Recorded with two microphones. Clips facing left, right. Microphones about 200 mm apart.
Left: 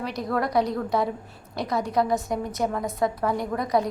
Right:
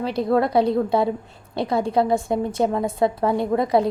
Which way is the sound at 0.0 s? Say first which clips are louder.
Right 7 dB; 30° right (ahead or behind).